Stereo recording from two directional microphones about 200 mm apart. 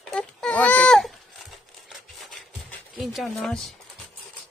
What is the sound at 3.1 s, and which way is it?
Speech, centre (ahead or behind).